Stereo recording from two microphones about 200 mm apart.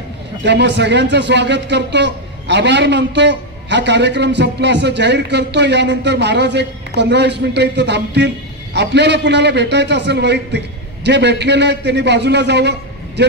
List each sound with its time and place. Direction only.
0.4 s speech: 60° right (ahead or behind)